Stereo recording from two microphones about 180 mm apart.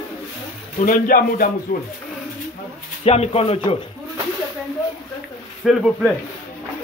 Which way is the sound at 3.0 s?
35° left (ahead or behind).